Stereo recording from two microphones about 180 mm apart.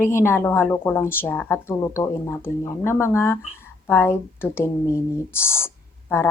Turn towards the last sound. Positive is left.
turn(degrees=15)  # may be behind; listen again after turning